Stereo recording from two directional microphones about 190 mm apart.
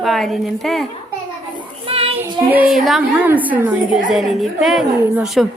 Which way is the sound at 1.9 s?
30° right (ahead or behind).